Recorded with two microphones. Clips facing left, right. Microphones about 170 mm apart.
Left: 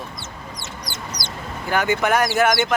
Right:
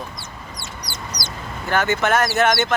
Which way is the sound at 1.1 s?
25° left (ahead or behind).